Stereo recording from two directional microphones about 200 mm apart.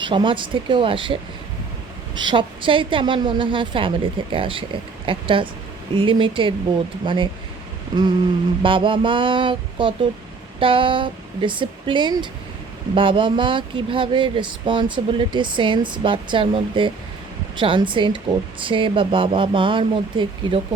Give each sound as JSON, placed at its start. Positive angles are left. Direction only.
{"t": 0.0, "sound": "speech", "side_deg": -25}